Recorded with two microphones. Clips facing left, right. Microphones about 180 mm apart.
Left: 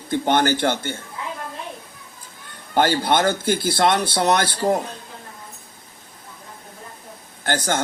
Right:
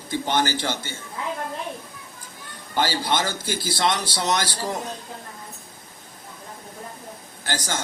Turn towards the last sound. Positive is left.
turn(degrees=55)  # may be behind; listen again after turning